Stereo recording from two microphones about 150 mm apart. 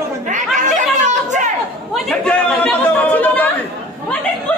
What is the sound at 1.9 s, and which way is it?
Chatter, 5° left (ahead or behind).